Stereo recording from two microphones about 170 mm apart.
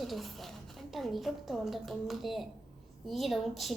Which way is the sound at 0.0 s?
Centre (ahead or behind).